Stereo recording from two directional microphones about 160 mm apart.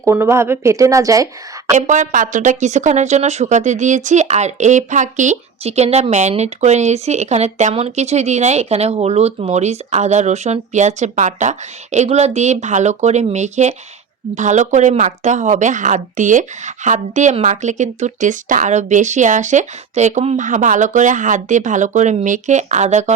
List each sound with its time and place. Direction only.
0.0 s a woman's voice: 15° right (ahead or behind)
1.7 s speech: 50° right (ahead or behind)